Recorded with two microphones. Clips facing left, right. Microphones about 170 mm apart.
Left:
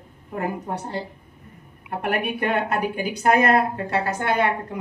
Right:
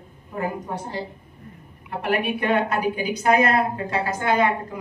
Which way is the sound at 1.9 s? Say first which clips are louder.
Right 1 dB; 50° left (ahead or behind).